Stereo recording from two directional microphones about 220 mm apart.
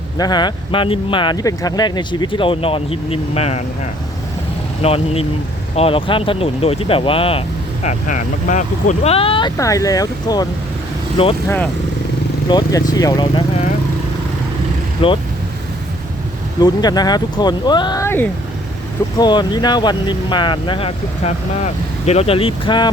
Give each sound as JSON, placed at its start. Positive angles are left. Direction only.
{"t": 0.2, "sound": "speech", "side_deg": 20}
{"t": 4.8, "sound": "speech", "side_deg": 25}
{"t": 11.4, "sound": "speech", "side_deg": 10}
{"t": 12.5, "sound": "speech", "side_deg": 20}
{"t": 15.0, "sound": "speech", "side_deg": 25}
{"t": 16.6, "sound": "speech", "side_deg": 15}